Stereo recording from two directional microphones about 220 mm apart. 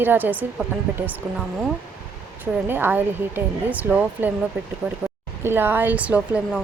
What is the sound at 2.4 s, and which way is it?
Speech, 10° right (ahead or behind).